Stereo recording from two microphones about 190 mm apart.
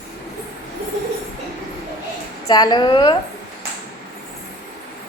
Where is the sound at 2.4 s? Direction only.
20° left (ahead or behind).